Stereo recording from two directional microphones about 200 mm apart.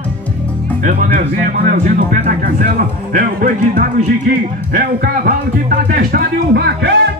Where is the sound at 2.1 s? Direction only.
45° right (ahead or behind).